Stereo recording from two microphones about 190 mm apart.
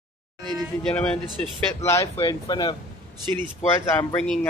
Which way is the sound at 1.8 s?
15° left (ahead or behind).